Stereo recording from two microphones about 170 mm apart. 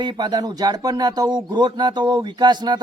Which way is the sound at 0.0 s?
25° right (ahead or behind).